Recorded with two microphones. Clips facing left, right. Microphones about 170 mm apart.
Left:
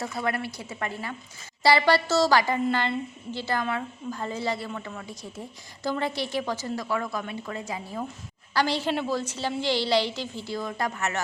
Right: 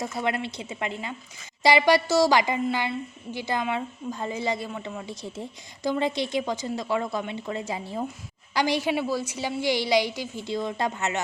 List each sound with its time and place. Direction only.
0.2 s a woman's voice: 20° right (ahead or behind)
8.5 s a woman's voice: 15° right (ahead or behind)